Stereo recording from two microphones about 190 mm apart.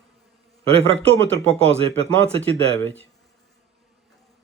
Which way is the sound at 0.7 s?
30° right (ahead or behind).